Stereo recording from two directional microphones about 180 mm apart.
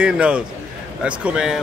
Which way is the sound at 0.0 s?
5° right (ahead or behind).